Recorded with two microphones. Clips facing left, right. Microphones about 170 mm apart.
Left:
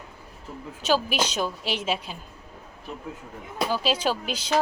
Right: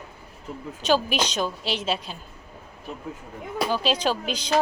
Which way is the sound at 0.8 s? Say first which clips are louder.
Right 1 dB; 5° left (ahead or behind).